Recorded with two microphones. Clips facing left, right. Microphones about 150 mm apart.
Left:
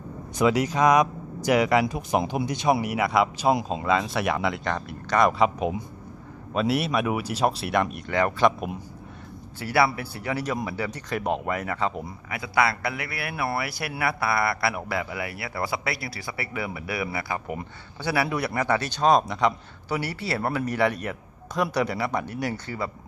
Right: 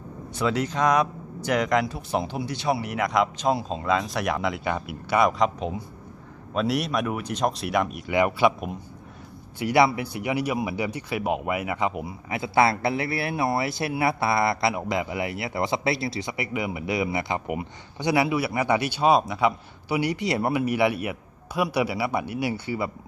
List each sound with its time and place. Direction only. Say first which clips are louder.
0.3 s speech: left 3 dB; 10° left (ahead or behind)
3.8 s speech: even; centre (ahead or behind)
5.4 s a man's voice: left 2 dB; 10° left (ahead or behind); by 8.7 s 5° right (ahead or behind)
9.6 s a man's voice: right 3 dB; 20° right (ahead or behind)
12.3 s speech: right 3 dB; 25° right (ahead or behind)
18.3 s a man's voice: right 2 dB; 5° right (ahead or behind)